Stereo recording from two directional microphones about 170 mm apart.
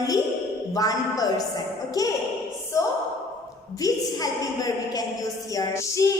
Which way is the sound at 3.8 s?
20° left (ahead or behind).